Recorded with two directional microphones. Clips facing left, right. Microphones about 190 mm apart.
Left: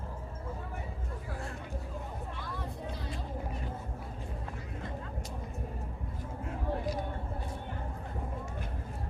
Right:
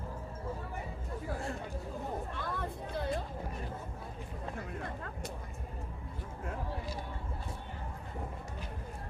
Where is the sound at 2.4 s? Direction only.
55° right (ahead or behind).